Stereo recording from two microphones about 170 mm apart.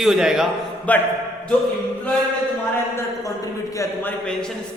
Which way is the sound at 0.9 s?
10° left (ahead or behind).